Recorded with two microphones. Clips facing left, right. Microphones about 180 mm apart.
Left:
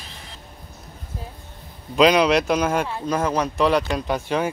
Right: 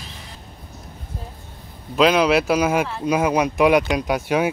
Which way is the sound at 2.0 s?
Centre (ahead or behind).